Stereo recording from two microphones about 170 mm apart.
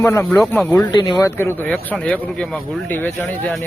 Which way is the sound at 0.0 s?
15° left (ahead or behind).